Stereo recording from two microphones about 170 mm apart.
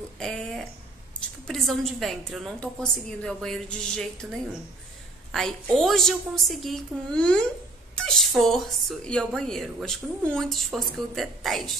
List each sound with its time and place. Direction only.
0.2 s a sound: centre (ahead or behind)
1.5 s a woman's voice: centre (ahead or behind)
5.3 s a woman's voice: centre (ahead or behind)